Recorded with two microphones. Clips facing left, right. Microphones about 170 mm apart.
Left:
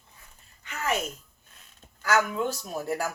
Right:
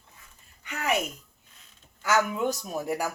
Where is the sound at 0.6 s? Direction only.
15° right (ahead or behind).